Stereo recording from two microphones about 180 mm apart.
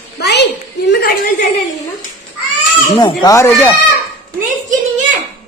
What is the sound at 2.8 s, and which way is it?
Speech, 20° left (ahead or behind).